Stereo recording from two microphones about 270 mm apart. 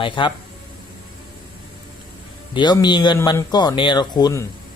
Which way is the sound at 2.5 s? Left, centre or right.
Centre.